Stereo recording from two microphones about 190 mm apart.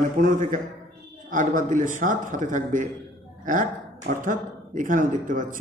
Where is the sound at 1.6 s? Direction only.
40° right (ahead or behind).